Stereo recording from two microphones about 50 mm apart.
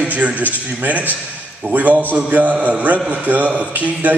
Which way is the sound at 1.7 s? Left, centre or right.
Right.